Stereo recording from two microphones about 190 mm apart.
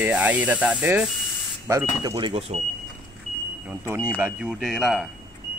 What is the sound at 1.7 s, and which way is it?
Speech, 20° right (ahead or behind).